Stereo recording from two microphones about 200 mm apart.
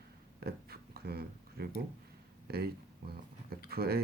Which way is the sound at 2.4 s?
50° right (ahead or behind).